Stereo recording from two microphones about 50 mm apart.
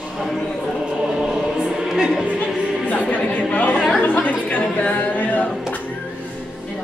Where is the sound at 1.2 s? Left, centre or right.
Centre.